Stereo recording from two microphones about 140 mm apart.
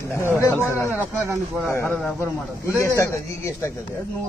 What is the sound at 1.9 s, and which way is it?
Speech, centre (ahead or behind).